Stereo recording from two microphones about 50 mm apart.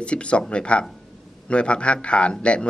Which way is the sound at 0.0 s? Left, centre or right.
Left.